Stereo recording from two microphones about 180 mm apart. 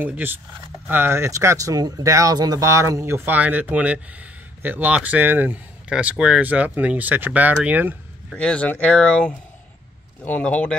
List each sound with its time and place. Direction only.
0.0 s speech: 10° right (ahead or behind)
8.4 s a man's voice: 5° left (ahead or behind)